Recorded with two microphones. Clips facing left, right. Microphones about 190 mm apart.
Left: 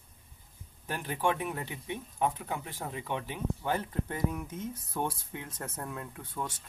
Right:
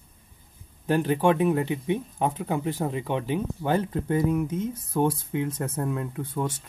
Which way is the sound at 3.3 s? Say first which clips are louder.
Right 8 dB; 85° right.